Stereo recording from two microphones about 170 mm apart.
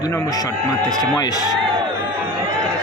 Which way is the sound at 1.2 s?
20° left (ahead or behind).